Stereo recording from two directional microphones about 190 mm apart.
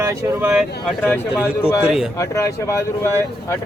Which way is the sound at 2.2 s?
15° left (ahead or behind).